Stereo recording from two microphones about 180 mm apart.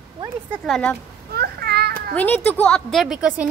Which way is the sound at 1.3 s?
60° right (ahead or behind).